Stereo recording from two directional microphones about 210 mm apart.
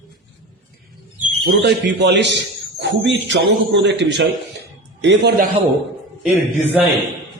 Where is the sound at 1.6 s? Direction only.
55° right (ahead or behind).